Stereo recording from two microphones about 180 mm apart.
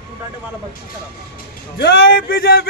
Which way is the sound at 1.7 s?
60° left (ahead or behind).